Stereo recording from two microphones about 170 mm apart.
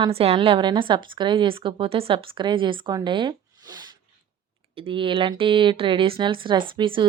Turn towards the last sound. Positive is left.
turn(degrees=-30)  # may be behind; listen again after turning